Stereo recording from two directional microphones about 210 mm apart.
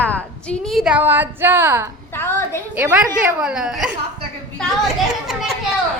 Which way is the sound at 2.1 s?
10° left (ahead or behind).